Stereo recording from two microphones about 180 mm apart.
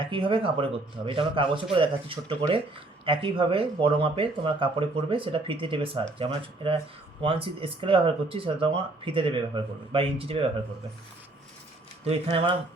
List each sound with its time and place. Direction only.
0.0 s speech: 30° right (ahead or behind)
12.0 s speech: 35° right (ahead or behind)